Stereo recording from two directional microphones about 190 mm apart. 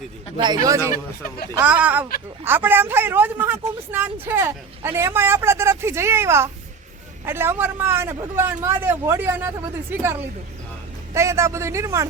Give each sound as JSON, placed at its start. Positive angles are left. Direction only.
{"t": 0.3, "sound": "a man's voice", "side_deg": -25}